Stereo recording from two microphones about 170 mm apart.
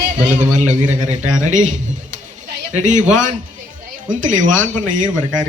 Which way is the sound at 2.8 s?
45° right (ahead or behind).